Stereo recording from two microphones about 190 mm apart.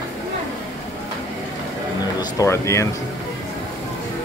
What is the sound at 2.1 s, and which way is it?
Speech, 15° left (ahead or behind).